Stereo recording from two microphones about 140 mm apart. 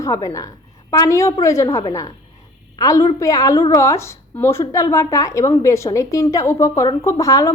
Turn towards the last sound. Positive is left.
turn(degrees=25)  # may be behind; listen again after turning